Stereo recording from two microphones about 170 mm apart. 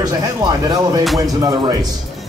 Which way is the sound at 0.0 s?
25° right (ahead or behind).